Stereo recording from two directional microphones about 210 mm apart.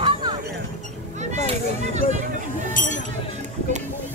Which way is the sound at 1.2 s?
35° right (ahead or behind).